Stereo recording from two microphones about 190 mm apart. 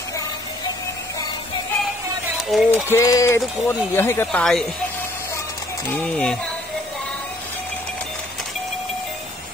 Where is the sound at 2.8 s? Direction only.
15° left (ahead or behind).